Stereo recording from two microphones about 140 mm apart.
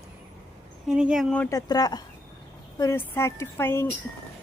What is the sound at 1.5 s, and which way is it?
A woman's voice, 25° left (ahead or behind).